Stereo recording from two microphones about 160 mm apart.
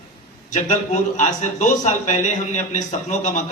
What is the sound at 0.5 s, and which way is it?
A man's voice, 50° left (ahead or behind).